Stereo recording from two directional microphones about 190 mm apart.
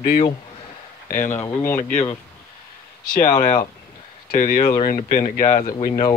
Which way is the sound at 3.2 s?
15° left (ahead or behind).